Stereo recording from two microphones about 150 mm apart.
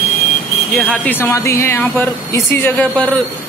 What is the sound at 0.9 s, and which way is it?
A man's voice, 10° left (ahead or behind).